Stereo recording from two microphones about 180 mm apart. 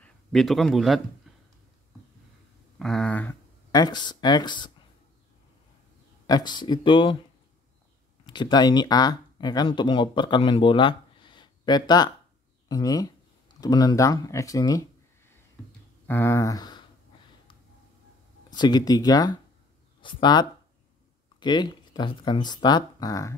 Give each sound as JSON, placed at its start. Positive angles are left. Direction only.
{"t": 0.0, "sound": "a man's voice", "side_deg": 0}
{"t": 2.8, "sound": "a sound", "side_deg": 5}
{"t": 3.7, "sound": "speech", "side_deg": 25}
{"t": 6.2, "sound": "speech", "side_deg": 20}
{"t": 8.3, "sound": "speech", "side_deg": 25}
{"t": 18.5, "sound": "speech", "side_deg": 20}